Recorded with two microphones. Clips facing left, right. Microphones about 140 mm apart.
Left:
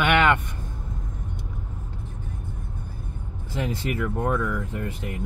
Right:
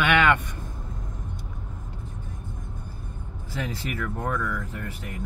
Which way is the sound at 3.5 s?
20° left (ahead or behind).